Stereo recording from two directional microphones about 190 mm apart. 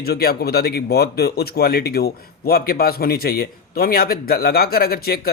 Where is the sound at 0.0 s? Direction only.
55° left (ahead or behind).